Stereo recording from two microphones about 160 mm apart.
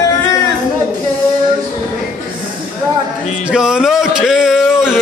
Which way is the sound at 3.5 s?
5° right (ahead or behind).